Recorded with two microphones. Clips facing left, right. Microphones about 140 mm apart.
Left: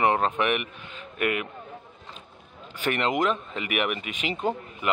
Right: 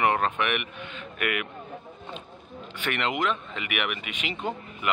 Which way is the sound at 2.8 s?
35° left (ahead or behind).